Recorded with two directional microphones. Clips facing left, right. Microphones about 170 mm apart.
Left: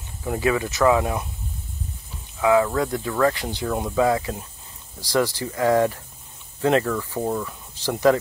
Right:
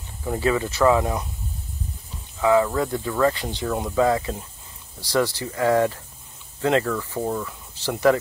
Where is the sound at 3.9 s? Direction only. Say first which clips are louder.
Even; 10° left (ahead or behind).